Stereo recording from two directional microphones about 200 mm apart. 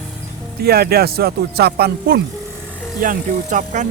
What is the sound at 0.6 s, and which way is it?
Speech, 50° right (ahead or behind).